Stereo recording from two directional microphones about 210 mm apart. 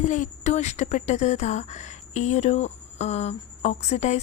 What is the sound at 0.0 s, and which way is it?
Speech, 35° left (ahead or behind).